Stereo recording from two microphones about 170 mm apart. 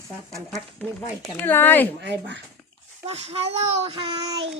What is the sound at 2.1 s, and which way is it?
Speech, 90° right.